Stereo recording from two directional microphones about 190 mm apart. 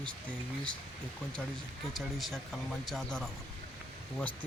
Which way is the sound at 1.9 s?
Centre (ahead or behind).